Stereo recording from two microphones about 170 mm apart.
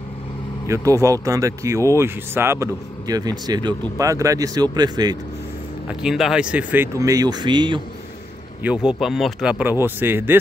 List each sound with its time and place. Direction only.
0.7 s speech: 20° right (ahead or behind)
6.0 s speech: 5° right (ahead or behind); by 7.8 s 25° right (ahead or behind)
8.6 s speech: 5° right (ahead or behind)